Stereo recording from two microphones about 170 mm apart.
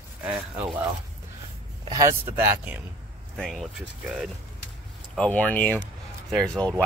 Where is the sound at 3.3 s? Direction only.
Centre (ahead or behind).